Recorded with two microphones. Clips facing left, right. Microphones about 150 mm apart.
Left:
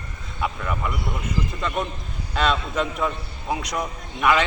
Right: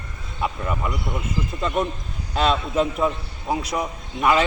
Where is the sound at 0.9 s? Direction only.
Centre (ahead or behind).